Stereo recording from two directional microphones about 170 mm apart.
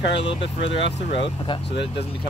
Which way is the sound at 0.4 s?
90° left.